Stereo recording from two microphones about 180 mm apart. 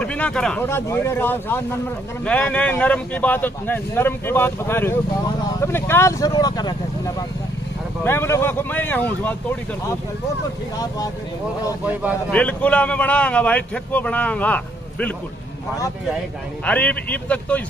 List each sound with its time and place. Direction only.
0.0 s a man's voice: 5° left (ahead or behind)
12.3 s a man's voice: 5° left (ahead or behind)
16.6 s a man's voice: 10° left (ahead or behind)